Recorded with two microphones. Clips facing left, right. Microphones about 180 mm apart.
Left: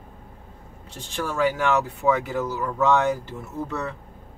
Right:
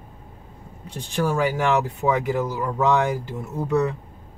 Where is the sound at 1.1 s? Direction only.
15° right (ahead or behind).